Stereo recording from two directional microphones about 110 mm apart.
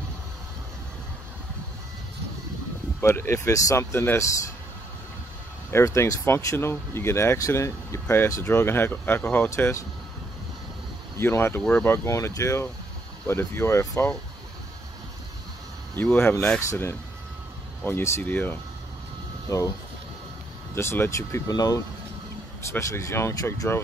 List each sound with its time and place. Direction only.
3.0 s speech: 25° left (ahead or behind)
5.7 s speech: 25° left (ahead or behind)
9.5 s speech: 30° left (ahead or behind)
11.1 s speech: 20° left (ahead or behind)
16.0 s speech: 15° left (ahead or behind)
19.5 s speech: 30° left (ahead or behind)
20.7 s speech: 20° left (ahead or behind)
21.5 s speech: 35° left (ahead or behind)